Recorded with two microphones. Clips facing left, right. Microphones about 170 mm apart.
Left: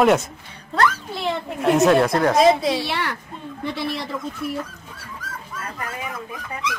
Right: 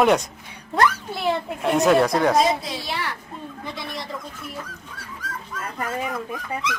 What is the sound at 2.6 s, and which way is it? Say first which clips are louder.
Speech: left 8 dB; 75° left (ahead or behind).